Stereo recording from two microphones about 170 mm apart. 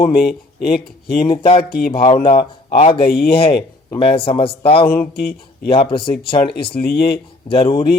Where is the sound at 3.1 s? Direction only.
65° left (ahead or behind).